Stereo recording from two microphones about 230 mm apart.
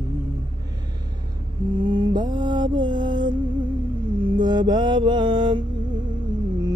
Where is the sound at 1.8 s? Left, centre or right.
Centre.